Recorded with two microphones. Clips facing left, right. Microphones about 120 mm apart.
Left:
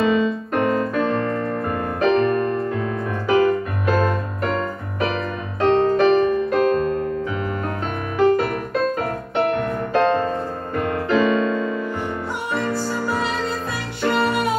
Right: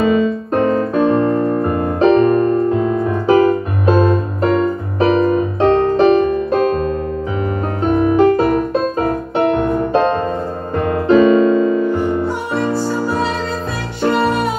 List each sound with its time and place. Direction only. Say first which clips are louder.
0.0 s music: right 4 dB; 30° right (ahead or behind)
7.9 s music: right 6 dB; 25° right (ahead or behind)
10.8 s keyboard: right 8 dB; 35° right (ahead or behind)
11.1 s music: right 8 dB; 25° right (ahead or behind)